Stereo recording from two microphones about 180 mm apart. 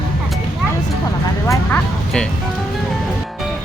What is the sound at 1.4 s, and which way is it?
Speech, 15° left (ahead or behind).